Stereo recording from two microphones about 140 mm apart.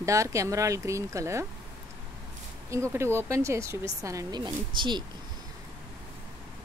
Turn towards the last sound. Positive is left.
turn(degrees=-35)  # may be behind; listen again after turning